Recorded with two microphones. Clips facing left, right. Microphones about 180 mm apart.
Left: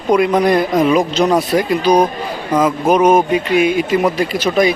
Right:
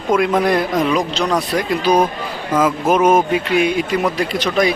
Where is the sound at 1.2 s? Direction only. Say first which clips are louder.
Left 5 dB; 25° left (ahead or behind).